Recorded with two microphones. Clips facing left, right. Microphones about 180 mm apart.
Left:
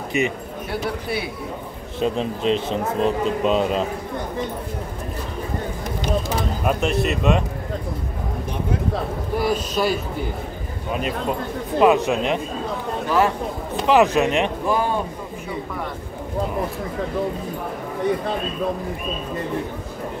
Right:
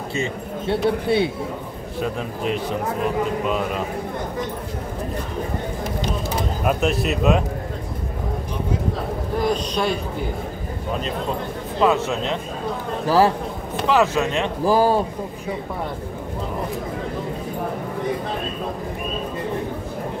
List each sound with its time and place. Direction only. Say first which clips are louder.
0.7 s speech: right 7 dB; 25° right (ahead or behind)
2.0 s a man's voice: left 4 dB; 25° left (ahead or behind)
6.6 s speech: right 1 dB; centre (ahead or behind)
9.4 s speech: even; 5° left (ahead or behind)
11.8 s speech: left 3 dB; 15° left (ahead or behind)
13.0 s speech: right 3 dB; 35° right (ahead or behind)
13.8 s speech: left 3 dB; 15° left (ahead or behind)
14.6 s a man's voice: right 4 dB; 35° right (ahead or behind)